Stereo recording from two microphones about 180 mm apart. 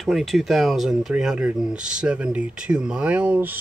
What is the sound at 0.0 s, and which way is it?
Speech, centre (ahead or behind).